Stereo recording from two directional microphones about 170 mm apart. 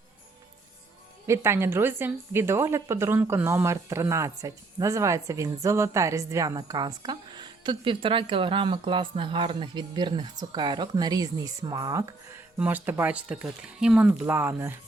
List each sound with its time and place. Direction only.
1.3 s a woman's voice: 15° right (ahead or behind)
12.5 s speech: 10° right (ahead or behind)